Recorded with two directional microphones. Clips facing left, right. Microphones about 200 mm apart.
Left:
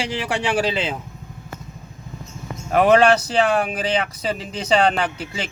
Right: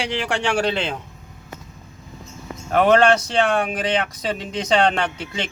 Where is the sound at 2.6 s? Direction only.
10° left (ahead or behind).